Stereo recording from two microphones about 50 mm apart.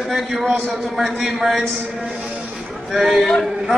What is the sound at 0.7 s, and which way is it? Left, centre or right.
Speech, centre.